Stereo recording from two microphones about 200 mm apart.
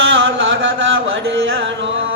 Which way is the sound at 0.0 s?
75° right (ahead or behind).